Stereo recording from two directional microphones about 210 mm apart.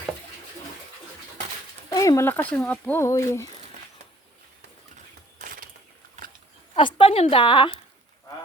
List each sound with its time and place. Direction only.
1.9 s speech: 15° left (ahead or behind)
5.4 s a sound: 40° right (ahead or behind)
6.7 s a woman's voice: 25° left (ahead or behind)